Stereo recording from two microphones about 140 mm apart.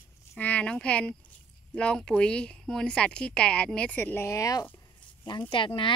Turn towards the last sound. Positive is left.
turn(degrees=35)  # may be behind; listen again after turning